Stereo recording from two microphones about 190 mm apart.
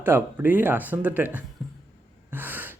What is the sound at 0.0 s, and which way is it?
A man's voice, 10° right (ahead or behind).